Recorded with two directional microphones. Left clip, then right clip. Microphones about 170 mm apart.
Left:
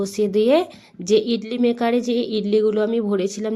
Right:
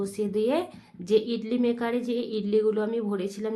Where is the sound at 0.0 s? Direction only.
40° left (ahead or behind).